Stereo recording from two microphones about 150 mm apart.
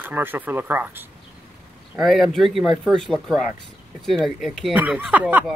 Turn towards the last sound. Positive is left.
turn(degrees=-10)  # may be behind; listen again after turning